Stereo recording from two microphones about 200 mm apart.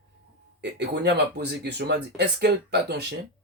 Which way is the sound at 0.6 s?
55° right (ahead or behind).